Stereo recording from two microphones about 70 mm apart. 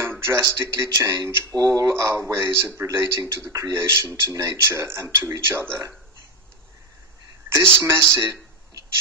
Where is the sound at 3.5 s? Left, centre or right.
Right.